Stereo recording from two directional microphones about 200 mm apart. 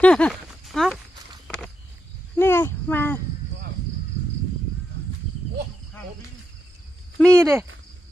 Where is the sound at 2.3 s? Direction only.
10° left (ahead or behind).